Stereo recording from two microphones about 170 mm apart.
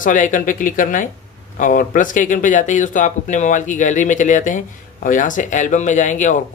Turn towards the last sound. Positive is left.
turn(degrees=45)  # may be behind; listen again after turning